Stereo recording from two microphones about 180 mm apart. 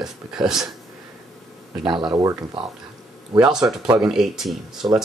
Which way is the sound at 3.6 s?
15° right (ahead or behind).